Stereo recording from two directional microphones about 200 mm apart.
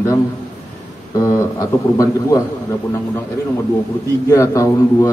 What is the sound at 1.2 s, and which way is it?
A man's voice, 15° left (ahead or behind).